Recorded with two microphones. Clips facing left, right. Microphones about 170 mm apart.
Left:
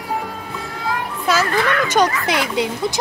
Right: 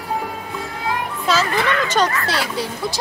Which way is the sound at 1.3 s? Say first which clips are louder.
Left 1 dB; 10° left (ahead or behind).